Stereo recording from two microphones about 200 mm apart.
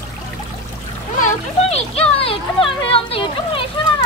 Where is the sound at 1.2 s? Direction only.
30° left (ahead or behind).